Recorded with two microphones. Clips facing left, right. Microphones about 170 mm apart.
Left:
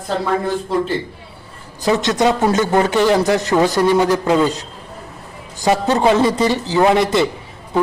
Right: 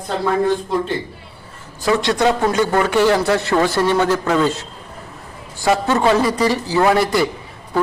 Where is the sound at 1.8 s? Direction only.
20° left (ahead or behind).